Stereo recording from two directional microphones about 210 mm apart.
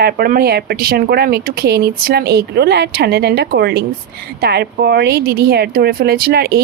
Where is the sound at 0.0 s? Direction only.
45° right (ahead or behind).